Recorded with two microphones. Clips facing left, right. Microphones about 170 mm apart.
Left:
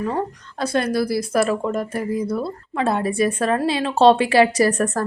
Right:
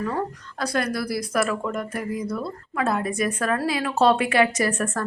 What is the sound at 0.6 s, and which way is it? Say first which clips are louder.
A woman's voice: left 5 dB; 25° left (ahead or behind).